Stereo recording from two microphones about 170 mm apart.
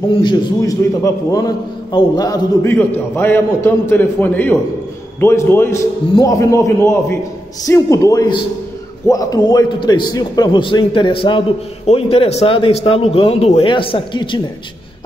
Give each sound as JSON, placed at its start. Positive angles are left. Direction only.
{"t": 0.2, "sound": "a man's voice", "side_deg": 25}